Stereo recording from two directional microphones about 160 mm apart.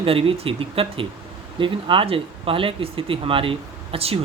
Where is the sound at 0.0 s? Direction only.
35° right (ahead or behind).